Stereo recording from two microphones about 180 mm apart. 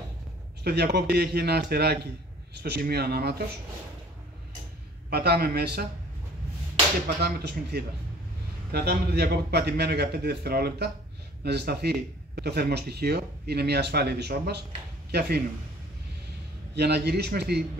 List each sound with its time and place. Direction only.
0.7 s speech: 65° right (ahead or behind)
5.1 s speech: 60° right (ahead or behind)
7.2 s speech: 65° right (ahead or behind)
16.7 s speech: 65° right (ahead or behind)